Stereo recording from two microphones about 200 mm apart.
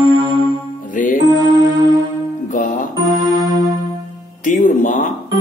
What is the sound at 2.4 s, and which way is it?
Music, 40° left (ahead or behind).